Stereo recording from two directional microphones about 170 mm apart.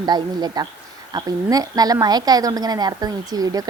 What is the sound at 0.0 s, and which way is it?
A woman's voice, 25° right (ahead or behind).